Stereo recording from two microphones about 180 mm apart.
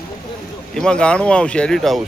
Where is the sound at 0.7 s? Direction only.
5° left (ahead or behind).